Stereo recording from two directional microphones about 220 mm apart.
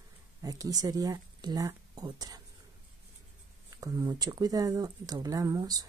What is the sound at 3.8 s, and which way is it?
Speech, 15° right (ahead or behind).